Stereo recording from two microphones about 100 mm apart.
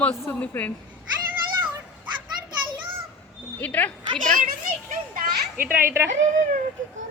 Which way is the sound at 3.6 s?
15° left (ahead or behind).